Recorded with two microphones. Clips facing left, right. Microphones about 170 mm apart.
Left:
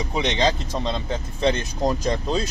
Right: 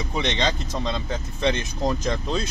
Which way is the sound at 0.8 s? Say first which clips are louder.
Left 1 dB; 30° left (ahead or behind).